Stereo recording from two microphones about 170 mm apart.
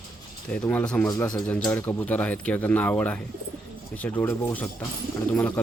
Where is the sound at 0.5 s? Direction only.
10° left (ahead or behind).